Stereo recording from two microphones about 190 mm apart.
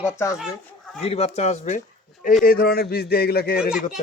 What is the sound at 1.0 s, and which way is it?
Speech, 35° left (ahead or behind).